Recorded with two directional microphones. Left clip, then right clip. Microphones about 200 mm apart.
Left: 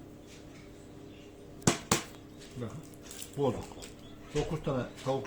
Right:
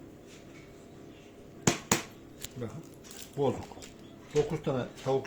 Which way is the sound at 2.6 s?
20° right (ahead or behind).